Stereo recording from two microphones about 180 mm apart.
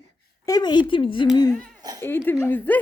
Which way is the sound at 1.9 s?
10° left (ahead or behind).